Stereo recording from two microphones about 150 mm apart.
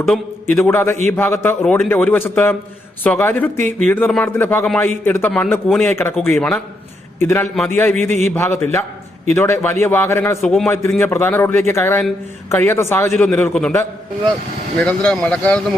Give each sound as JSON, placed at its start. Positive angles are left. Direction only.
{"t": 0.5, "sound": "a man's voice", "side_deg": 15}
{"t": 1.6, "sound": "a man's voice", "side_deg": 5}
{"t": 7.9, "sound": "a man's voice", "side_deg": -50}
{"t": 8.2, "sound": "a man's voice", "side_deg": 15}
{"t": 10.4, "sound": "a man's voice", "side_deg": 0}
{"t": 10.7, "sound": "a man's voice", "side_deg": 15}
{"t": 13.1, "sound": "a man's voice", "side_deg": 5}
{"t": 14.8, "sound": "a man's voice", "side_deg": 5}